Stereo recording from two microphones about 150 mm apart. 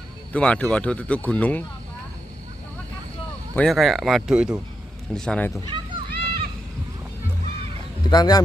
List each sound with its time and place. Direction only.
0.3 s speech: 10° left (ahead or behind)
3.5 s speech: centre (ahead or behind)
5.1 s speech: 5° left (ahead or behind)
5.7 s a sound: 35° right (ahead or behind)
8.1 s speech: 25° left (ahead or behind)